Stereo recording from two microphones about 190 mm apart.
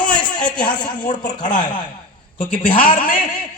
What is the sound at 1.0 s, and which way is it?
A man's voice, 25° left (ahead or behind).